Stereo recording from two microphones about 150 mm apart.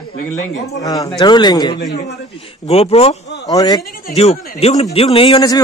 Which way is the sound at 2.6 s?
40° left (ahead or behind).